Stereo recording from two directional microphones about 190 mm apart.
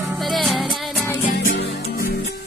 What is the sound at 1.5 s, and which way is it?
Music, 70° left (ahead or behind).